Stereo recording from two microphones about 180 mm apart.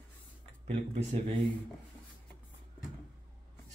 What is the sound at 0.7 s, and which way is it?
Speech, 35° right (ahead or behind).